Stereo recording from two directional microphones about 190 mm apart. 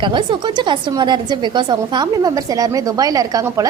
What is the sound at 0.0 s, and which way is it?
A woman's voice, 25° right (ahead or behind).